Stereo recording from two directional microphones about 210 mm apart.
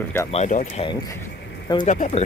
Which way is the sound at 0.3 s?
35° left (ahead or behind).